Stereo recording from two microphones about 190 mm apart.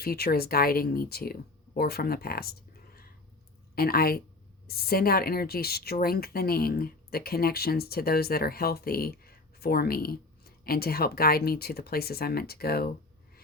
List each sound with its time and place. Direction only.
0.0 s a woman's voice: 55° left (ahead or behind)